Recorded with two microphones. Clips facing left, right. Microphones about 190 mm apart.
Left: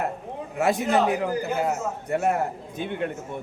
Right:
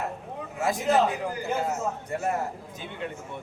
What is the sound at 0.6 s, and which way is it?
A man's voice, 65° left (ahead or behind).